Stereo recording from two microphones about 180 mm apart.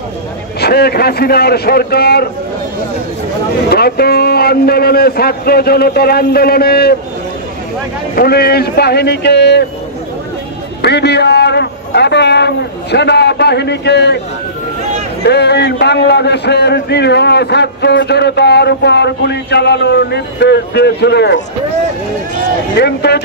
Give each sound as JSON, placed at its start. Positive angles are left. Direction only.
{"t": 0.6, "sound": "a man's voice", "side_deg": 65}
{"t": 3.7, "sound": "a man's voice", "side_deg": 60}
{"t": 8.2, "sound": "a man's voice", "side_deg": 60}
{"t": 10.8, "sound": "a man's voice", "side_deg": 70}
{"t": 15.2, "sound": "a man's voice", "side_deg": 70}
{"t": 22.8, "sound": "a man's voice", "side_deg": 70}